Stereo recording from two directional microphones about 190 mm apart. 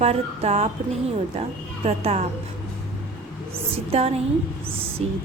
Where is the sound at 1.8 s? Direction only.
35° right (ahead or behind).